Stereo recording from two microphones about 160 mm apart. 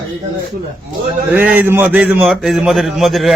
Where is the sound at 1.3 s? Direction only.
10° right (ahead or behind).